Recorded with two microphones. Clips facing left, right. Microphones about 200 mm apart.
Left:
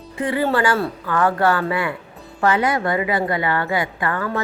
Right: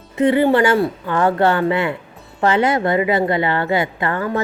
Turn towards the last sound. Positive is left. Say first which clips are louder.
# right 3 dB
turn(degrees=-25)  # may be behind; listen again after turning